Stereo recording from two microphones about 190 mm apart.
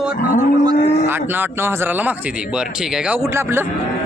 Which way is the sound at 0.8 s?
30° left (ahead or behind).